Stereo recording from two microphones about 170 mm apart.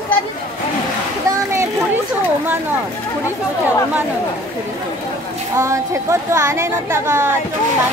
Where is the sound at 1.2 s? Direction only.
15° right (ahead or behind).